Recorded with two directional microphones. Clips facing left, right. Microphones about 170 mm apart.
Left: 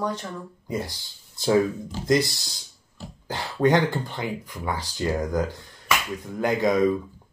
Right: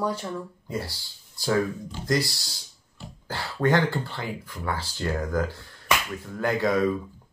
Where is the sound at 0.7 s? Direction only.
20° left (ahead or behind).